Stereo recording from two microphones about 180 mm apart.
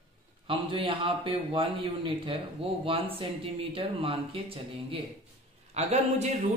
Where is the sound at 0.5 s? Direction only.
30° right (ahead or behind).